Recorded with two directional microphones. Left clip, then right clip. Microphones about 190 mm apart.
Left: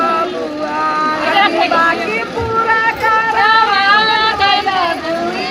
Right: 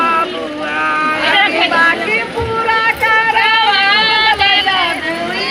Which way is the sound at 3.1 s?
35° left (ahead or behind).